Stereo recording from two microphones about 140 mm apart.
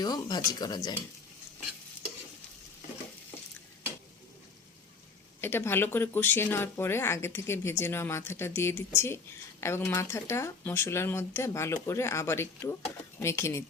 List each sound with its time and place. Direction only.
0.0 s speech: 30° left (ahead or behind)
5.4 s speech: 15° left (ahead or behind)